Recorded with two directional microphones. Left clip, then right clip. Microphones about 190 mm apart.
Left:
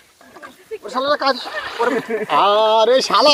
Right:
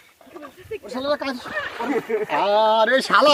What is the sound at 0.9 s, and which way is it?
Speech, 10° left (ahead or behind).